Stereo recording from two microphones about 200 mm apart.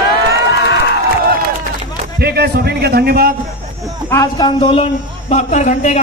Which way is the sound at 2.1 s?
55° right (ahead or behind).